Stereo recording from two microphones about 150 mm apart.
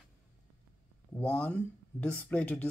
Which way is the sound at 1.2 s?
10° left (ahead or behind).